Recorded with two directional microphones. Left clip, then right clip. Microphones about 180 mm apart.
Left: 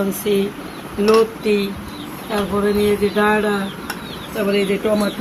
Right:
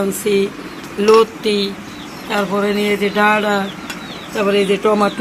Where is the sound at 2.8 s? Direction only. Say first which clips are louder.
Right 3 dB; 40° right (ahead or behind).